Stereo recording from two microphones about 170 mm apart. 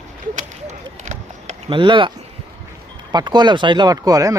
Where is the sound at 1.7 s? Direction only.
30° right (ahead or behind).